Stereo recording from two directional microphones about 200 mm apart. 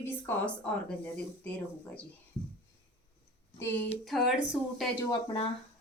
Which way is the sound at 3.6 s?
10° left (ahead or behind).